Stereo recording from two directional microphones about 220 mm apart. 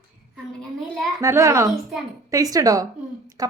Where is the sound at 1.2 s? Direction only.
15° right (ahead or behind).